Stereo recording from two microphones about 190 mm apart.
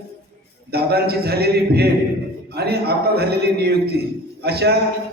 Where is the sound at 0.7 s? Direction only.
55° right (ahead or behind).